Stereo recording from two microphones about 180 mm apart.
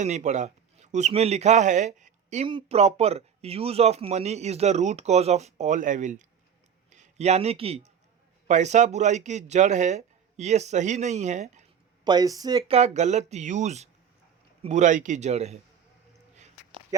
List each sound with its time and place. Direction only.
0.0 s speech: 40° right (ahead or behind)
12.0 s speech: 20° right (ahead or behind)
12.7 s speech: 40° right (ahead or behind)
16.9 s a sound: 20° right (ahead or behind)